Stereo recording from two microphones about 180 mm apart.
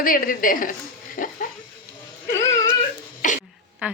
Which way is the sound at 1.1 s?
50° left (ahead or behind).